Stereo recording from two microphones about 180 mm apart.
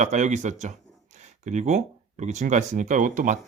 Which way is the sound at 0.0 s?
40° right (ahead or behind).